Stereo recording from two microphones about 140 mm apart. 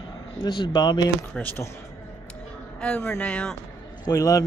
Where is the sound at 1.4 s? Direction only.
5° left (ahead or behind).